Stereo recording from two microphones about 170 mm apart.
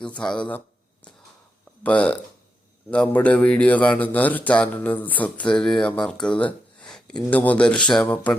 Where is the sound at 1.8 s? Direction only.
10° left (ahead or behind).